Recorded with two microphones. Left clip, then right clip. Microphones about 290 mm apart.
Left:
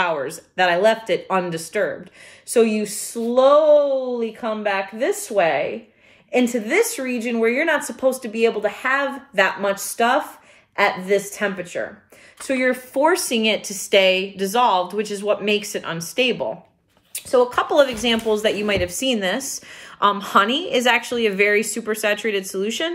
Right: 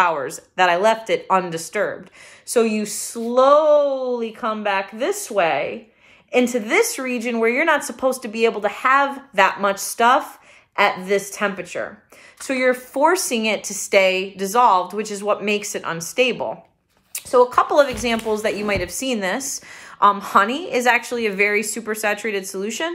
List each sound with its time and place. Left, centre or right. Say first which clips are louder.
0.0 s speech: right 3 dB; centre
3.1 s speech: even; centre
3.5 s speech: left 1 dB; right
7.8 s speech: left 1 dB; right
8.4 s speech: even; centre
17.3 s speech: right 2 dB; centre